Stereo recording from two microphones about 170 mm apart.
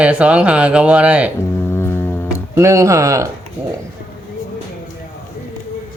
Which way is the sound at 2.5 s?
15° right (ahead or behind).